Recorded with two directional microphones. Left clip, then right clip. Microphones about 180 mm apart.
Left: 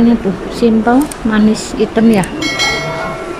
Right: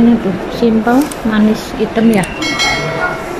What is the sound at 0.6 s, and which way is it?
Speech, centre (ahead or behind).